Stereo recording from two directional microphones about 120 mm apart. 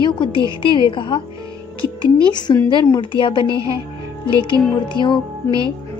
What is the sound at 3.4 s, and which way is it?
Speech, 30° right (ahead or behind).